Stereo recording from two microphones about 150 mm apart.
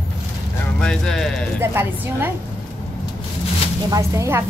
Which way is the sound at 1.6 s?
15° right (ahead or behind).